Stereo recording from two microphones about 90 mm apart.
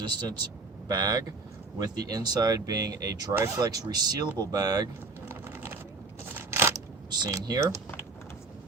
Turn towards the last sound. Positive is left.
turn(degrees=-40)  # may be behind; listen again after turning